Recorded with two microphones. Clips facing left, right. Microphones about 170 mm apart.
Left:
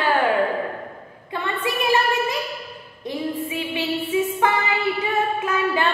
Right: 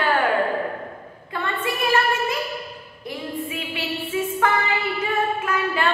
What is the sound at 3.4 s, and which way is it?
Music, 20° left (ahead or behind).